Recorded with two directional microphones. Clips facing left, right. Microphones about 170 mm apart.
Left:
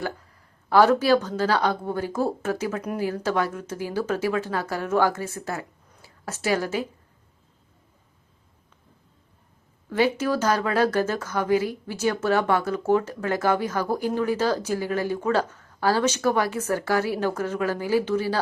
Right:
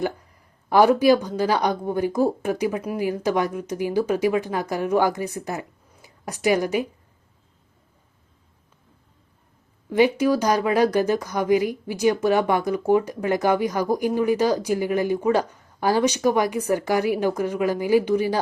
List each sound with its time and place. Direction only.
0.7 s speech: 15° right (ahead or behind)
9.9 s speech: 15° right (ahead or behind)